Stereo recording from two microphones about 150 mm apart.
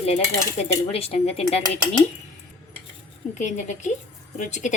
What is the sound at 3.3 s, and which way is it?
A woman's voice, 55° left (ahead or behind).